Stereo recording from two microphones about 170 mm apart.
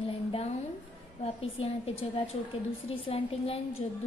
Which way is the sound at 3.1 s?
35° left (ahead or behind).